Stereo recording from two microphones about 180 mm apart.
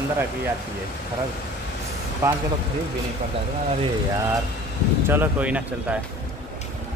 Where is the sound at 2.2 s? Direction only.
15° right (ahead or behind).